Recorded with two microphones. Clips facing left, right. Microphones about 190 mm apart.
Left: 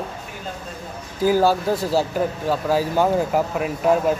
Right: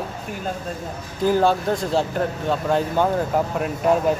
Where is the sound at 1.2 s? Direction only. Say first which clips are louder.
Left 1 dB; 5° left (ahead or behind).